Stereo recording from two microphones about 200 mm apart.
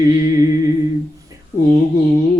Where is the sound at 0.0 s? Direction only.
15° right (ahead or behind).